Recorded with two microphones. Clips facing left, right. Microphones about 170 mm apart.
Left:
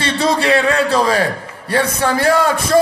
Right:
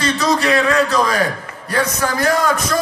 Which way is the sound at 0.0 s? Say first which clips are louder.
Left 1 dB; 30° left (ahead or behind).